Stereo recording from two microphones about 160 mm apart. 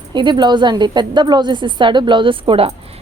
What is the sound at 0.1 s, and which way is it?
A woman's voice, 30° right (ahead or behind).